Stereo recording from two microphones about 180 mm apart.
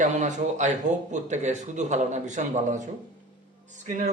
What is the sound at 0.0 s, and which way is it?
Speech, 40° right (ahead or behind).